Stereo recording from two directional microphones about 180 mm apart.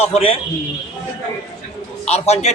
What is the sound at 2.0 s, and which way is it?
Speech, 35° left (ahead or behind).